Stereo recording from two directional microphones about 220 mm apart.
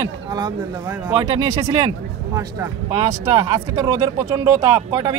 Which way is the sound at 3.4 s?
15° right (ahead or behind).